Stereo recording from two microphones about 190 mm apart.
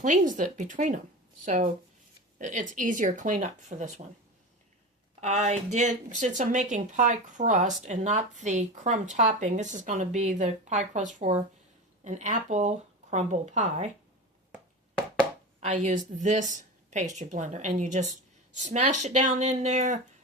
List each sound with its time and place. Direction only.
0.0 s speech: 40° right (ahead or behind)
5.2 s speech: 35° right (ahead or behind)
15.6 s speech: 40° right (ahead or behind)